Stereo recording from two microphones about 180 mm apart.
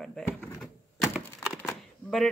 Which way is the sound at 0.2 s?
Centre (ahead or behind).